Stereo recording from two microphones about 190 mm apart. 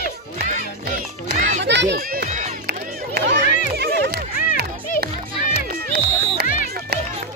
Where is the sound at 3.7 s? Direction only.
55° right (ahead or behind).